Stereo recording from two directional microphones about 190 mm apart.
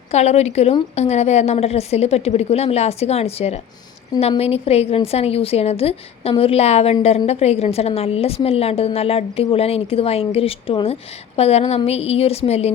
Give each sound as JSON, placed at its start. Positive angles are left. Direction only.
{"t": 0.1, "sound": "a woman's voice", "side_deg": 35}